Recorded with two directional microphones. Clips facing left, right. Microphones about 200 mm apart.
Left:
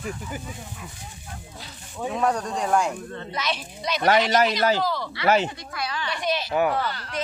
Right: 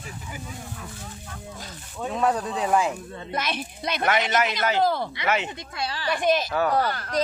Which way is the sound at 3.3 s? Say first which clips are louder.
Right 2 dB; 55° right (ahead or behind).